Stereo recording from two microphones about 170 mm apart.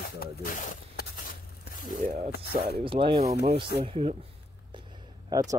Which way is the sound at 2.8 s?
30° right (ahead or behind).